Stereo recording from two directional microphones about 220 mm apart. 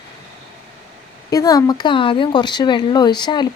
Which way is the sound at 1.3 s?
15° left (ahead or behind).